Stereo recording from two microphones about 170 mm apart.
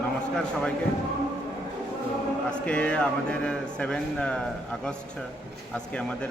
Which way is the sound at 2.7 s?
5° left (ahead or behind).